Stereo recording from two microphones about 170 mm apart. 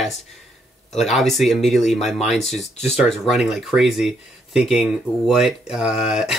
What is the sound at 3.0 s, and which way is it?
Speech, centre (ahead or behind).